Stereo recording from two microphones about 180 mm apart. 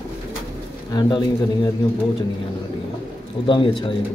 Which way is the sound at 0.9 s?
20° left (ahead or behind).